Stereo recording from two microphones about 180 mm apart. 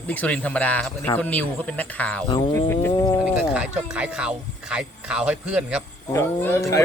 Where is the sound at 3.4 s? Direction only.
5° right (ahead or behind).